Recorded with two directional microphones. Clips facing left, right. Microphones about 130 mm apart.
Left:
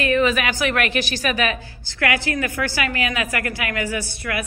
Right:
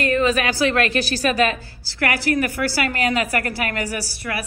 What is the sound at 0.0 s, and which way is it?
A woman's voice, 40° right (ahead or behind).